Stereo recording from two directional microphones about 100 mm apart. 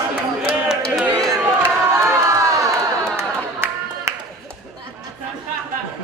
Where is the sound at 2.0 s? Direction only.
30° right (ahead or behind).